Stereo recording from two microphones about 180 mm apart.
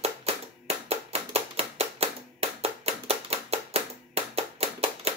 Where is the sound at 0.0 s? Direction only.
35° right (ahead or behind).